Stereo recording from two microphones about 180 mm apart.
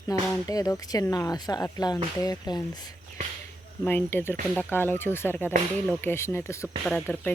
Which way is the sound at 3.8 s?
10° left (ahead or behind).